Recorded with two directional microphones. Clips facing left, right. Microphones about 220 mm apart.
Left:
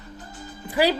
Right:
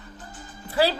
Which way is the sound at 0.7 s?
15° left (ahead or behind).